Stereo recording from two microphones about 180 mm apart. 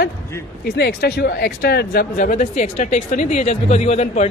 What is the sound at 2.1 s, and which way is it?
A man's voice, 45° left (ahead or behind).